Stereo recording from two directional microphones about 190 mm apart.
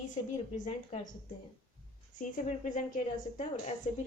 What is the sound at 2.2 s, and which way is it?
Speech, 40° left (ahead or behind).